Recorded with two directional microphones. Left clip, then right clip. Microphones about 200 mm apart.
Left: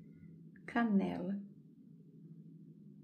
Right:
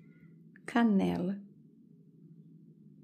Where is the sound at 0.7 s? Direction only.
50° right (ahead or behind).